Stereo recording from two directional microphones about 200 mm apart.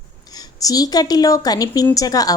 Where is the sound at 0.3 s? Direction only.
20° left (ahead or behind).